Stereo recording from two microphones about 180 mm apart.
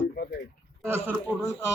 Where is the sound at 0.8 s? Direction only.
15° right (ahead or behind).